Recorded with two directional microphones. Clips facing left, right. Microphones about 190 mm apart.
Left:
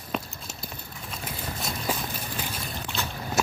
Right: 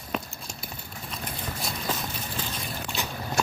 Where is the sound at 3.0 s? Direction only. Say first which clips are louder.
Left 1 dB; 15° right (ahead or behind).